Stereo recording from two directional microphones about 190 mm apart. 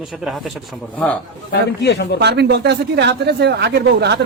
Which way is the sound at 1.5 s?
60° left (ahead or behind).